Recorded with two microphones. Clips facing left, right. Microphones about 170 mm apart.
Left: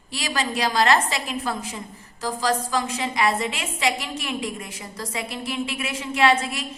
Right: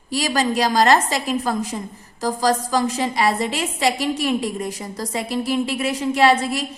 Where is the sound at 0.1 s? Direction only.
40° right (ahead or behind).